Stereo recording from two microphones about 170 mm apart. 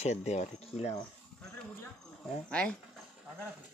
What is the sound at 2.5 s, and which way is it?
Speech, 5° left (ahead or behind).